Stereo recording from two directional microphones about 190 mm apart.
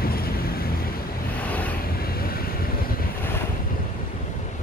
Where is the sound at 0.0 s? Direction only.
50° left (ahead or behind).